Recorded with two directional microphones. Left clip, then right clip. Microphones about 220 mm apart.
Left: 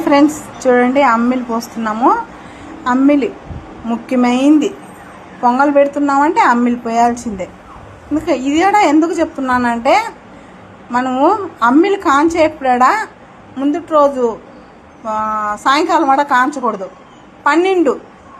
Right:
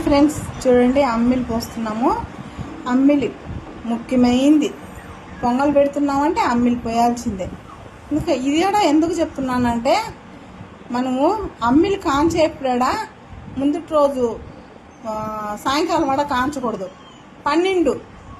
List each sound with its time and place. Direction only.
0.0 s a woman's voice: centre (ahead or behind)